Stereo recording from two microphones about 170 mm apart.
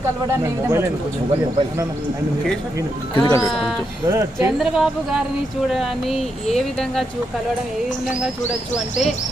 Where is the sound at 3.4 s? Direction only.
Centre (ahead or behind).